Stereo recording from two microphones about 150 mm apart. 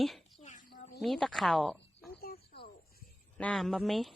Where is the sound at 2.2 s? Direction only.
90° left.